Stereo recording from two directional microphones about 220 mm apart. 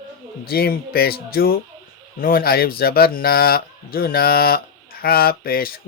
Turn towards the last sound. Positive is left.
turn(degrees=40)  # may be behind; listen again after turning